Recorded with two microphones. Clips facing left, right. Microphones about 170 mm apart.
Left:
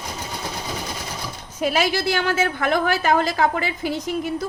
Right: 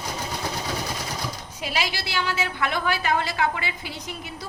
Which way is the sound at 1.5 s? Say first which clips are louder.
Left 9 dB; 50° left (ahead or behind).